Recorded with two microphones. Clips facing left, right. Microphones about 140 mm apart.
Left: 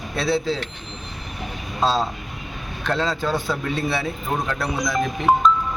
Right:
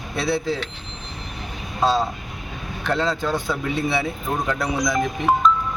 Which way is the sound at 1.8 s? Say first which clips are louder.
Right 1 dB; 15° right (ahead or behind).